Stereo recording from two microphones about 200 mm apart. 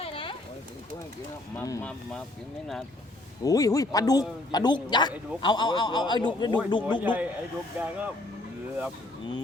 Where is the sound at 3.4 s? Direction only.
15° left (ahead or behind).